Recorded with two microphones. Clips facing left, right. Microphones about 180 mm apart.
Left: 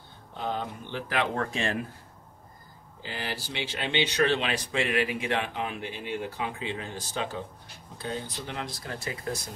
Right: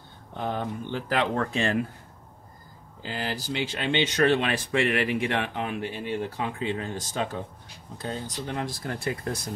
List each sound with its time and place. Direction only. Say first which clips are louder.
0.4 s speech: right 3 dB; 55° right (ahead or behind); by 1.8 s 35° right (ahead or behind)
3.1 s speech: right 4 dB; 45° right (ahead or behind)